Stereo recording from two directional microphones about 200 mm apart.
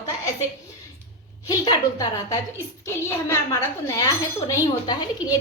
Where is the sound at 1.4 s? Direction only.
20° left (ahead or behind).